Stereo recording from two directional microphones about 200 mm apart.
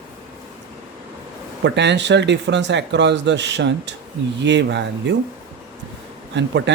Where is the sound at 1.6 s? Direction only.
60° right (ahead or behind).